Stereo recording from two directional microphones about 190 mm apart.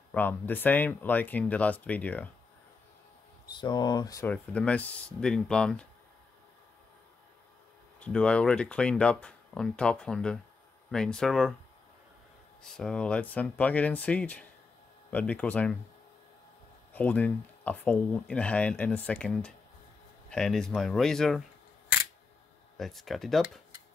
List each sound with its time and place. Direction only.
0.1 s speech: 10° left (ahead or behind)
3.5 s speech: 25° left (ahead or behind)
4.3 s speech: 5° left (ahead or behind)
8.0 s speech: 5° left (ahead or behind)
12.6 s speech: 5° left (ahead or behind)
16.9 s speech: 10° left (ahead or behind)
22.8 s speech: centre (ahead or behind)